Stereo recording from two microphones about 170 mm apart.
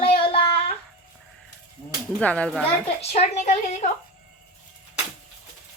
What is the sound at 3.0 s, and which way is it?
Speech, 40° left (ahead or behind).